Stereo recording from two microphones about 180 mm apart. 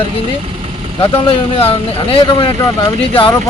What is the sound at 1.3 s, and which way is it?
Speech, 30° left (ahead or behind).